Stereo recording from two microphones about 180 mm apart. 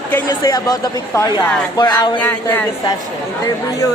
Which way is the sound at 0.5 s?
20° left (ahead or behind).